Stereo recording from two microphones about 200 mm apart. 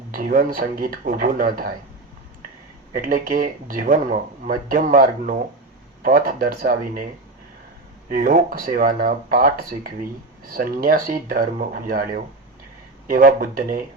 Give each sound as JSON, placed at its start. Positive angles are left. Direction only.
{"t": 0.1, "sound": "speech", "side_deg": -40}
{"t": 2.9, "sound": "speech", "side_deg": -45}
{"t": 8.1, "sound": "speech", "side_deg": -40}